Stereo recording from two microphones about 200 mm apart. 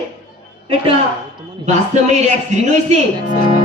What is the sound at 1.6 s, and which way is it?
A man's voice, 35° right (ahead or behind).